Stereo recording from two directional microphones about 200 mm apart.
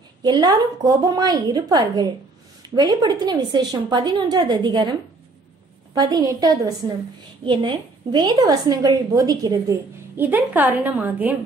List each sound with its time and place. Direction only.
0.2 s a woman's voice: 20° right (ahead or behind)
5.9 s a woman's voice: 20° right (ahead or behind)